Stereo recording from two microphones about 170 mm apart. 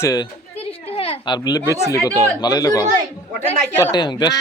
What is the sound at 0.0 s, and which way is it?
Speech, 20° left (ahead or behind).